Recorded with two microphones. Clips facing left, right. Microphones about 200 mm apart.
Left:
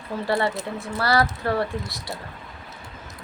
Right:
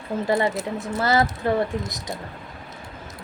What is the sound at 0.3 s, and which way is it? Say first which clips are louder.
A woman's voice: right 1 dB; 20° right (ahead or behind).